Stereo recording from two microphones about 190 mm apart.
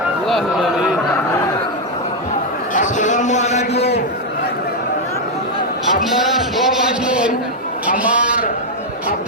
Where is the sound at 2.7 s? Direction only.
40° left (ahead or behind).